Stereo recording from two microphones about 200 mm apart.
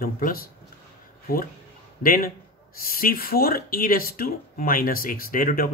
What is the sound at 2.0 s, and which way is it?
Speech, 45° left (ahead or behind).